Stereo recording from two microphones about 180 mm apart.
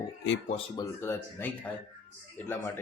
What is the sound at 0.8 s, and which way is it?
Speech, 15° left (ahead or behind).